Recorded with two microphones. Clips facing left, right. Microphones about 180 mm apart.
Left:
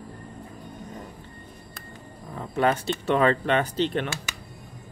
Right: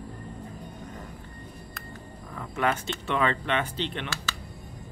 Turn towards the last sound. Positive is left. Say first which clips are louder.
# left 6 dB
turn(degrees=40)  # may be behind; listen again after turning